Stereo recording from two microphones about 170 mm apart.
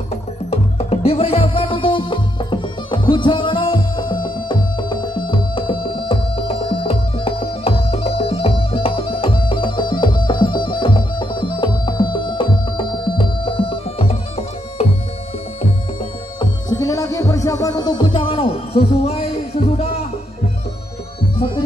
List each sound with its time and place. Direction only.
0.1 s music: 35° left (ahead or behind)
16.3 s music: 20° left (ahead or behind)